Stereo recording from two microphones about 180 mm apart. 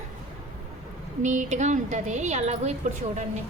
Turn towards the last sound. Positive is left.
turn(degrees=-40)  # may be behind; listen again after turning